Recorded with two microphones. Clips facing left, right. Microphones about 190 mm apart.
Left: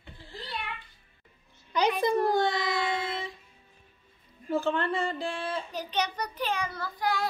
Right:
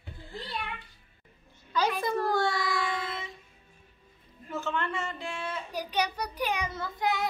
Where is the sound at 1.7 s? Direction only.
20° left (ahead or behind).